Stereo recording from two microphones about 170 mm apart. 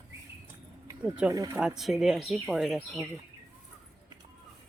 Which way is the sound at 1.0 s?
5° right (ahead or behind).